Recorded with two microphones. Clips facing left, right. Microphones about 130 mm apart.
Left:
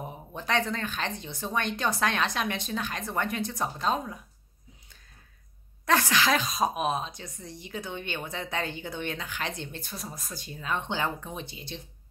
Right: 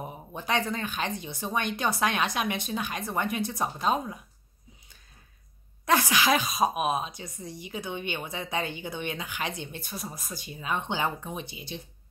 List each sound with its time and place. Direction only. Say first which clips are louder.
0.0 s speech: even; 10° right (ahead or behind)
5.9 s speech: right 1 dB; 10° right (ahead or behind)